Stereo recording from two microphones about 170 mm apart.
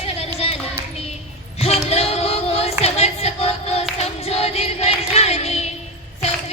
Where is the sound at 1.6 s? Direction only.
35° left (ahead or behind).